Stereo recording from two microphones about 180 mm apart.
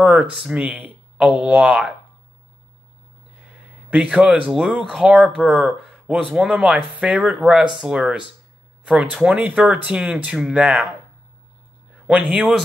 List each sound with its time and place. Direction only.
0.0 s speech: 5° right (ahead or behind)
3.9 s speech: 5° right (ahead or behind)
11.9 s a man's voice: 5° right (ahead or behind)